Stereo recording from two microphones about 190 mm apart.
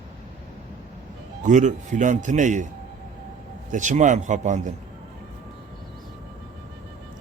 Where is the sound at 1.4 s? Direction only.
40° right (ahead or behind).